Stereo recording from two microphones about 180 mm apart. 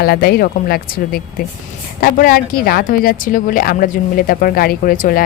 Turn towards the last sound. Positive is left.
turn(degrees=45)  # may be behind; listen again after turning